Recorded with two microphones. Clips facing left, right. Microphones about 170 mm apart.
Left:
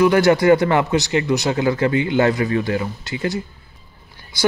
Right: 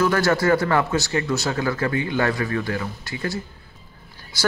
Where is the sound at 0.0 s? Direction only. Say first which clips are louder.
Left 6 dB; 20° left (ahead or behind).